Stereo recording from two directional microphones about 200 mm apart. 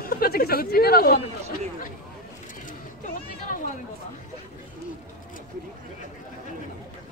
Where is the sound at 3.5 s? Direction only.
45° left (ahead or behind).